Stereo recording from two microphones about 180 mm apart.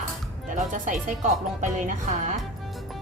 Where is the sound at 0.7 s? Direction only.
45° right (ahead or behind).